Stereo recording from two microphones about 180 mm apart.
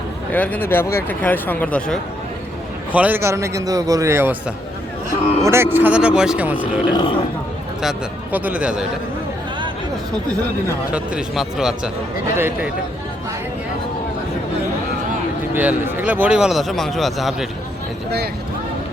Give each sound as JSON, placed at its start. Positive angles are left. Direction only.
{"t": 0.3, "sound": "speech", "side_deg": 10}
{"t": 2.9, "sound": "a man's voice", "side_deg": -10}
{"t": 6.6, "sound": "speech", "side_deg": 25}
{"t": 7.8, "sound": "a man's voice", "side_deg": -5}
{"t": 10.9, "sound": "a man's voice", "side_deg": -5}
{"t": 12.4, "sound": "a man's voice", "side_deg": -15}
{"t": 15.5, "sound": "a man's voice", "side_deg": -10}